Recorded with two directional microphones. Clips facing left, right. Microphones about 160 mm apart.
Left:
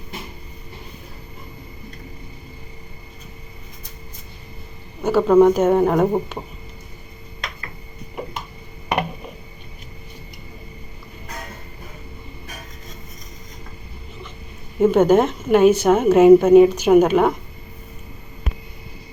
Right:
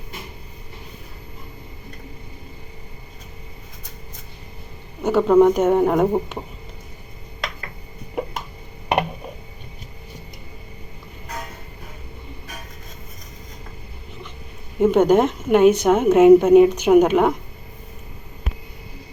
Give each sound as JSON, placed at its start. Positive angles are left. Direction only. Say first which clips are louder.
{"t": 5.0, "sound": "a woman's voice", "louder": "left 1 dB", "side_deg": -15}
{"t": 14.8, "sound": "a woman's voice", "louder": "left 1 dB", "side_deg": -15}